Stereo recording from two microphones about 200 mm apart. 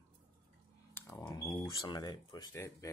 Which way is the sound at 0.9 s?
15° left (ahead or behind).